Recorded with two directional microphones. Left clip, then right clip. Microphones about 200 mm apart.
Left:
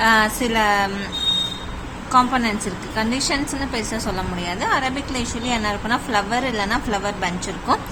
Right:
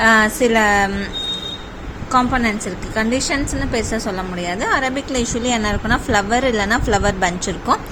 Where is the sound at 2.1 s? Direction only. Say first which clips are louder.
Right 1 dB; 15° right (ahead or behind).